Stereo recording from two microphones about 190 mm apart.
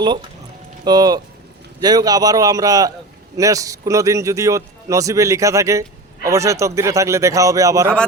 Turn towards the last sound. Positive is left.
turn(degrees=-15)  # may be behind; listen again after turning